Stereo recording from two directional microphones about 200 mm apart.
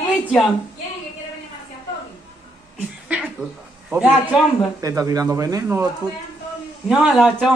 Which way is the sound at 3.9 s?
5° right (ahead or behind).